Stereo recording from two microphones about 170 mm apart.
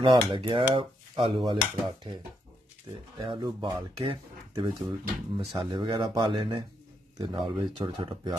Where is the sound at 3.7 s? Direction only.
15° right (ahead or behind).